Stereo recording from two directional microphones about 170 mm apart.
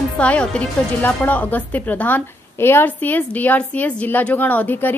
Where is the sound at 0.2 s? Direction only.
5° left (ahead or behind).